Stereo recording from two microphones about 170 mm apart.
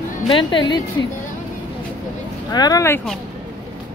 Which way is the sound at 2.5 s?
20° left (ahead or behind).